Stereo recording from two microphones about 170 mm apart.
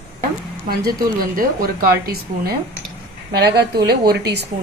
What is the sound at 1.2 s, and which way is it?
Speech, 60° right (ahead or behind).